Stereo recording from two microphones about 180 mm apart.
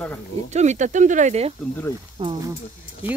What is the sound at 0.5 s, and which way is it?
Speech, 40° right (ahead or behind).